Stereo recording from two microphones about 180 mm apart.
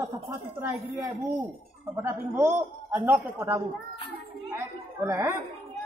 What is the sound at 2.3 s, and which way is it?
Speech, 10° right (ahead or behind).